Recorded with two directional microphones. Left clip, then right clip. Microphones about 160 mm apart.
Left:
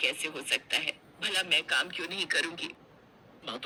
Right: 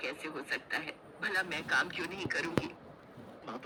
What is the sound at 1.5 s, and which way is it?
Speech, 50° left (ahead or behind).